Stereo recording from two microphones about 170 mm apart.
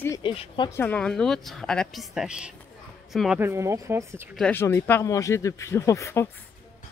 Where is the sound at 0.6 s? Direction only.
10° left (ahead or behind).